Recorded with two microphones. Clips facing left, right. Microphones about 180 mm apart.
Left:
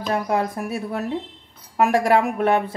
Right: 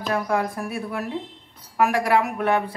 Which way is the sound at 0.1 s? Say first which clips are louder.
Left 2 dB; 25° left (ahead or behind).